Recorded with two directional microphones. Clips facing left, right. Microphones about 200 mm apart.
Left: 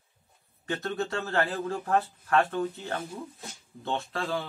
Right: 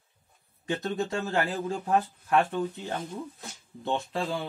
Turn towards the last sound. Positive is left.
turn(degrees=-15)  # may be behind; listen again after turning